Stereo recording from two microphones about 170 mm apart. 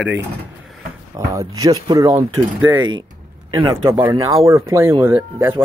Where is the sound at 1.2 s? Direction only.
20° right (ahead or behind).